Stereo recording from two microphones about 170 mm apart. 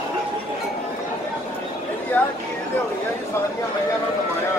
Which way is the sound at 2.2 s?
10° left (ahead or behind).